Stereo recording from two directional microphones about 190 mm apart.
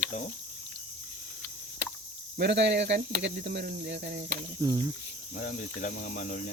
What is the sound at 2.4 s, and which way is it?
Speech, 65° right (ahead or behind).